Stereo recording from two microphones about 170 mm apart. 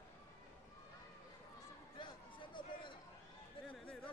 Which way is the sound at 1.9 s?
30° left (ahead or behind).